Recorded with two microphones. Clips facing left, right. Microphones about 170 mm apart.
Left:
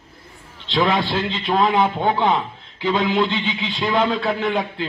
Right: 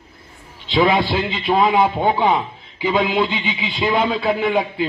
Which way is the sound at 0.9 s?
15° right (ahead or behind).